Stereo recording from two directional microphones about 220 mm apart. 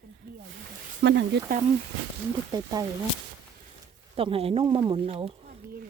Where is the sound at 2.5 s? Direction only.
15° right (ahead or behind).